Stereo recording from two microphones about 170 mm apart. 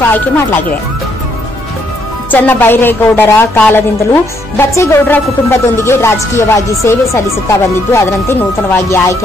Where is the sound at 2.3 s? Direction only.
10° left (ahead or behind).